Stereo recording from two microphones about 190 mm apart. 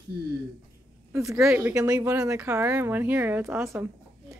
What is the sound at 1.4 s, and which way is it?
Speech, 10° right (ahead or behind).